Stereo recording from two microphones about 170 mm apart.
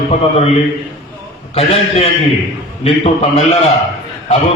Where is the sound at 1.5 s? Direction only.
40° left (ahead or behind).